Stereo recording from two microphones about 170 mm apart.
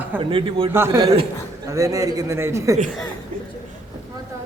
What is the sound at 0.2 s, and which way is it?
Speech, 30° right (ahead or behind).